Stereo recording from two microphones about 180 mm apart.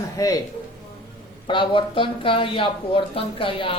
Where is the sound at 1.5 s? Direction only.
25° left (ahead or behind).